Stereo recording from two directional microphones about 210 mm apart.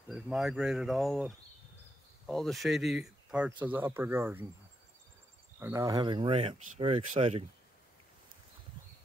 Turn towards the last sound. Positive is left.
turn(degrees=-25)  # may be behind; listen again after turning